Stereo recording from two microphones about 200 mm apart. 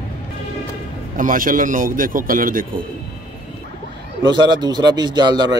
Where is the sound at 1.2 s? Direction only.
45° right (ahead or behind).